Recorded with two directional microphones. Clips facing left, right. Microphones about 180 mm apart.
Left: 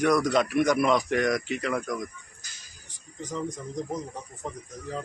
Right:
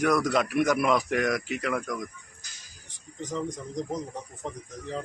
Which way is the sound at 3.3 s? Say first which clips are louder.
Even; centre (ahead or behind).